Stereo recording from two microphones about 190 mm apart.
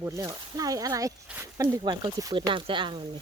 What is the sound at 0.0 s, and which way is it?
Speech, 15° right (ahead or behind).